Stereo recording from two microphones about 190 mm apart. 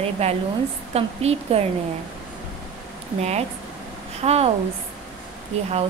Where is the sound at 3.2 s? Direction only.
35° right (ahead or behind).